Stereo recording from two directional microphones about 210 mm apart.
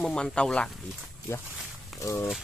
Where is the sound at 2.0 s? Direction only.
15° left (ahead or behind).